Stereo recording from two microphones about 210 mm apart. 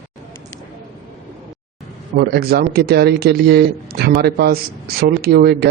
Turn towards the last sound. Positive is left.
turn(degrees=-50)  # may be behind; listen again after turning